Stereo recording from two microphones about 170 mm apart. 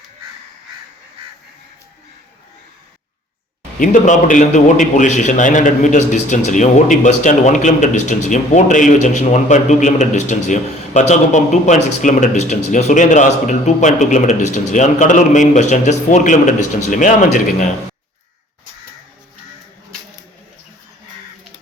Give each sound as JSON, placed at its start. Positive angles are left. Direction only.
{"t": 3.8, "sound": "a man's voice", "side_deg": 45}